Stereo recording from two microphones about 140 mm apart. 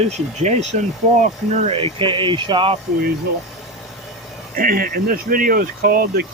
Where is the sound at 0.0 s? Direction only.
55° right (ahead or behind); by 2.7 s 35° right (ahead or behind).